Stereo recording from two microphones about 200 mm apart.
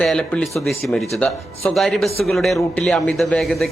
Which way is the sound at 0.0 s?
5° left (ahead or behind).